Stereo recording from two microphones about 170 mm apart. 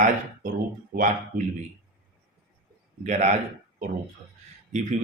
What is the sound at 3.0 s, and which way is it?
Speech, 45° right (ahead or behind).